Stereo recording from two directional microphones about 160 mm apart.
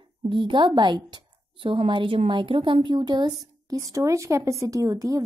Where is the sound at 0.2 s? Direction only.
30° right (ahead or behind).